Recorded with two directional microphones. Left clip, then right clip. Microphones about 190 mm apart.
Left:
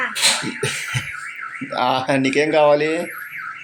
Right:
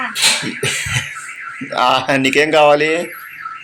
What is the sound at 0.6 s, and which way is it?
Cough, centre (ahead or behind).